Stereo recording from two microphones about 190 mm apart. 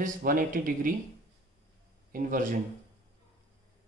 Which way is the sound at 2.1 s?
45° right (ahead or behind).